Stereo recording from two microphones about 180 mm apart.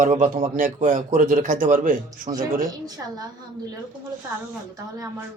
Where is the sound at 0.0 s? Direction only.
40° right (ahead or behind).